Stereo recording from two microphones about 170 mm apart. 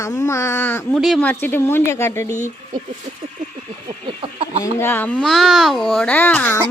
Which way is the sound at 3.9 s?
30° right (ahead or behind).